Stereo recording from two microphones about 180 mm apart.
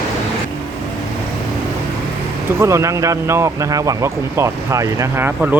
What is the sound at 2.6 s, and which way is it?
Speech, 15° right (ahead or behind).